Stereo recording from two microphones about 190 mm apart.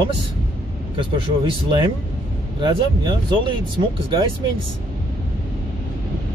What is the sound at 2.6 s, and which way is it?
Speech, 25° right (ahead or behind).